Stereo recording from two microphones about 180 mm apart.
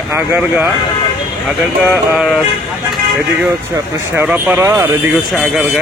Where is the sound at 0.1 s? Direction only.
10° right (ahead or behind).